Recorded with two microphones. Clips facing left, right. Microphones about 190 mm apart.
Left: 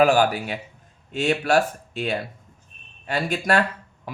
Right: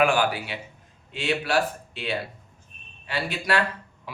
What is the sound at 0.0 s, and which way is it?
Speech, 40° left (ahead or behind).